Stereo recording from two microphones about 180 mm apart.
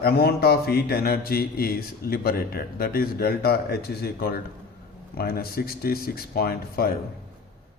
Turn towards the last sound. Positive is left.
turn(degrees=60)  # may be behind; listen again after turning